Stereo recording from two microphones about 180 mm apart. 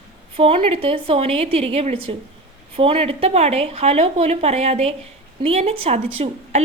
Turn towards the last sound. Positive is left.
turn(degrees=-30)  # may be behind; listen again after turning